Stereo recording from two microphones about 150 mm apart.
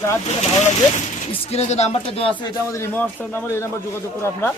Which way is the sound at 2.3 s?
15° left (ahead or behind).